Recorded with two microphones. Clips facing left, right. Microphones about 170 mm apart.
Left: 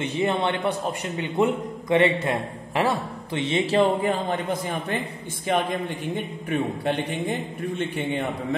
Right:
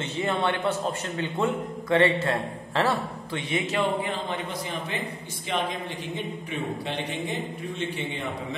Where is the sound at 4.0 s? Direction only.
45° left (ahead or behind).